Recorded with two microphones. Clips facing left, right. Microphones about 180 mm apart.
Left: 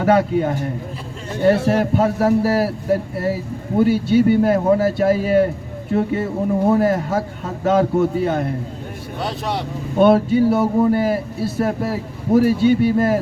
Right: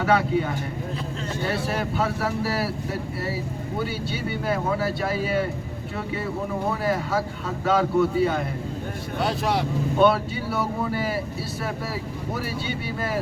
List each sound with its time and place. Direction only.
0.0 s speech: 45° left (ahead or behind)
9.2 s speech: centre (ahead or behind)
10.0 s speech: 50° left (ahead or behind)